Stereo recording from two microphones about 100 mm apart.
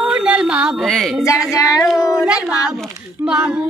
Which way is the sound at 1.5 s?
35° left (ahead or behind).